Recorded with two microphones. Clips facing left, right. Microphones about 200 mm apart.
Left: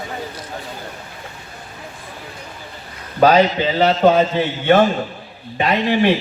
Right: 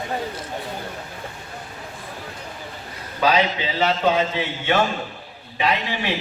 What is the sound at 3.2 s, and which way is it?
A man's voice, 50° left (ahead or behind).